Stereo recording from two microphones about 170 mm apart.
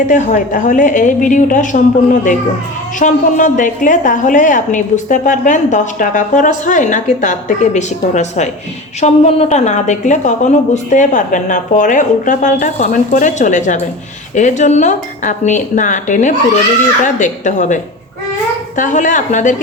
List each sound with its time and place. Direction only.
0.1 s a woman's voice: 45° left (ahead or behind)
18.8 s a woman's voice: 45° left (ahead or behind)